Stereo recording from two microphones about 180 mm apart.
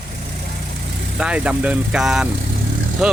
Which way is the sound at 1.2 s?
5° right (ahead or behind).